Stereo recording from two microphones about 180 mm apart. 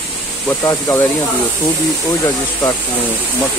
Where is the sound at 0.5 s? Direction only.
15° left (ahead or behind).